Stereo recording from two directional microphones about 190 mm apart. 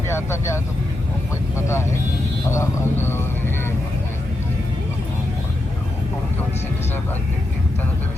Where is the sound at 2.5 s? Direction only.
15° left (ahead or behind).